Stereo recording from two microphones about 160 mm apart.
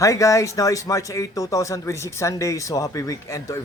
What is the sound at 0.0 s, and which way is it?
Speech, 20° left (ahead or behind).